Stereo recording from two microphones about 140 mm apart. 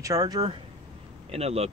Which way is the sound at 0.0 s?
25° right (ahead or behind).